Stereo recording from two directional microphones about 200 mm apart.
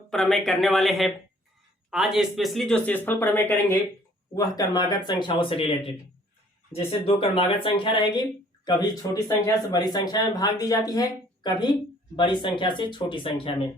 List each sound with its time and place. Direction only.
0.1 s speech: centre (ahead or behind); by 13.7 s 25° left (ahead or behind)